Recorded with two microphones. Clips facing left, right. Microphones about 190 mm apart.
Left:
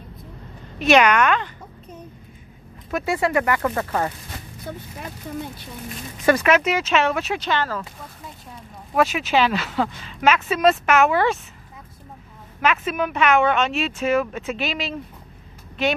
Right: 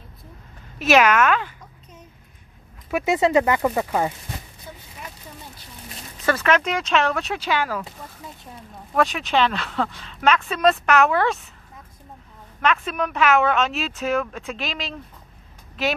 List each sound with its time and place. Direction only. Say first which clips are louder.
0.7 s speech: left 1 dB; 5° right (ahead or behind)
2.9 s speech: right 3 dB; 15° right (ahead or behind)
4.7 s speech: left 8 dB; 65° left (ahead or behind)
6.2 s speech: left 3 dB; 10° left (ahead or behind)
7.4 s speech: right 3 dB; 10° right (ahead or behind)
8.9 s speech: left 1 dB; 5° left (ahead or behind)
12.6 s speech: left 1 dB; 5° left (ahead or behind)